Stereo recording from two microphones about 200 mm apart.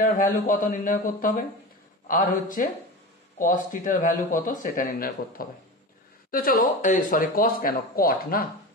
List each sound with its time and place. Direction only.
0.0 s speech: 40° left (ahead or behind)
2.4 s speech: 45° left (ahead or behind)